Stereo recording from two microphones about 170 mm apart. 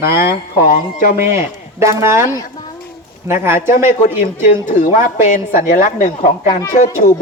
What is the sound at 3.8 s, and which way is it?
A man's voice, 50° left (ahead or behind).